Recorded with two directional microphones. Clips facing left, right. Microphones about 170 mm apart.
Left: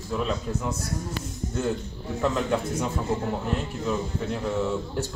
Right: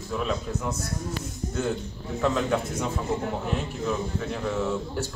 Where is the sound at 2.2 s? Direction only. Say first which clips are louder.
Even; 5° left (ahead or behind).